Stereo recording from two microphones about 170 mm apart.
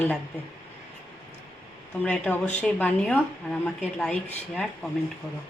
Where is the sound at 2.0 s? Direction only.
10° left (ahead or behind).